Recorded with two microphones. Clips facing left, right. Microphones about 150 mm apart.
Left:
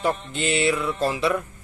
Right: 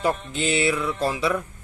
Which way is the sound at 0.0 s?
Centre (ahead or behind).